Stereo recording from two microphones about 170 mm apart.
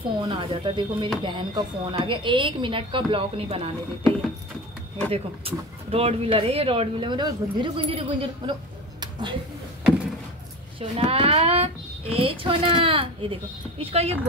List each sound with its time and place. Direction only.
0.2 s a woman's voice: 30° right (ahead or behind)
5.1 s speech: 35° right (ahead or behind)
9.0 s a sound: 25° right (ahead or behind)
10.8 s speech: 35° right (ahead or behind)